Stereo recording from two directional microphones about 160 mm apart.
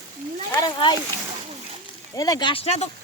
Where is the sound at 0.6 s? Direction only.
30° left (ahead or behind).